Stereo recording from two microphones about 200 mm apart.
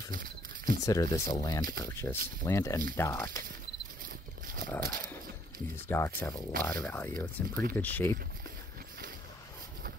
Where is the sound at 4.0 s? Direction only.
45° right (ahead or behind).